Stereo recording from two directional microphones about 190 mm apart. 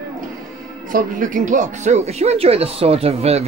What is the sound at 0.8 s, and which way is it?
Speech, 45° right (ahead or behind).